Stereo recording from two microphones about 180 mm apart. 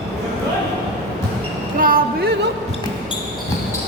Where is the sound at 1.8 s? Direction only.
55° right (ahead or behind).